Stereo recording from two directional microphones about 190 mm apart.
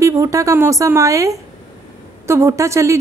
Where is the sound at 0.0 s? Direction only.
15° right (ahead or behind).